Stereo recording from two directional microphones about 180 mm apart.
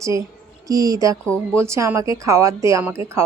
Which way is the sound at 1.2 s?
5° left (ahead or behind).